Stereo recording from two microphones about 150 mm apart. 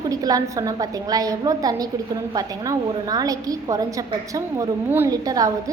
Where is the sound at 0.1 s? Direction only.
25° right (ahead or behind).